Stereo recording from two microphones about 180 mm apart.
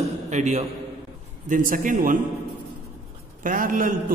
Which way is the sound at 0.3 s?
40° right (ahead or behind).